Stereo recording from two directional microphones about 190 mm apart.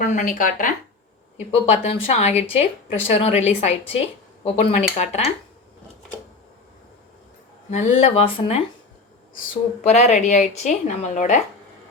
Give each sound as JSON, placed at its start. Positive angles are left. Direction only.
{"t": 0.0, "sound": "speech", "side_deg": 40}
{"t": 1.8, "sound": "speech", "side_deg": 30}
{"t": 7.7, "sound": "speech", "side_deg": 35}
{"t": 9.8, "sound": "speech", "side_deg": 35}